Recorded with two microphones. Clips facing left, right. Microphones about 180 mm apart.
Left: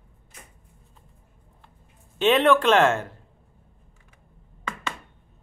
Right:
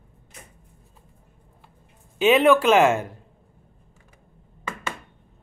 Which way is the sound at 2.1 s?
5° right (ahead or behind).